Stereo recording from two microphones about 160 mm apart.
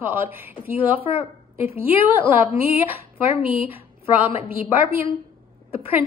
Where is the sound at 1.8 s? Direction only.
15° right (ahead or behind).